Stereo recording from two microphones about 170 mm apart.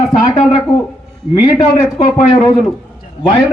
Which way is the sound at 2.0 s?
35° left (ahead or behind).